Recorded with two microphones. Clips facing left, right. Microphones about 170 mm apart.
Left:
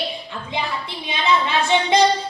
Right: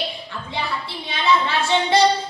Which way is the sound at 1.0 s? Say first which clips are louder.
Even; 15° left (ahead or behind).